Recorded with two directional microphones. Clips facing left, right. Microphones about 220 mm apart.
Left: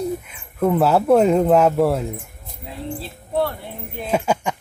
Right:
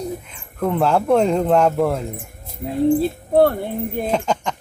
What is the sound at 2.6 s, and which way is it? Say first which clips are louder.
Speech: right 14 dB; 50° right (ahead or behind).